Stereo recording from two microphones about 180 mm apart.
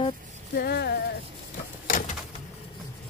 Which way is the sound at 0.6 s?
60° left (ahead or behind).